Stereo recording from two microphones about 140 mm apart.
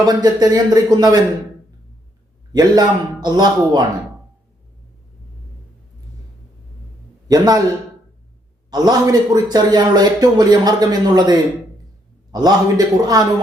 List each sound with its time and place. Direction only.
0.0 s a man's voice: 30° right (ahead or behind)
2.5 s a man's voice: 30° right (ahead or behind)
7.3 s a man's voice: 25° right (ahead or behind)
8.7 s a man's voice: 30° right (ahead or behind)